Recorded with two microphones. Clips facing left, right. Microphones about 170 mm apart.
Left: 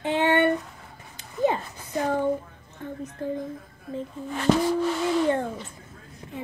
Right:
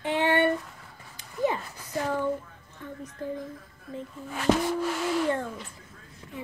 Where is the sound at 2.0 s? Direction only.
45° left (ahead or behind).